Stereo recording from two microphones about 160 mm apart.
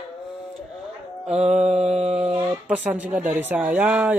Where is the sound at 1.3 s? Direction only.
40° right (ahead or behind).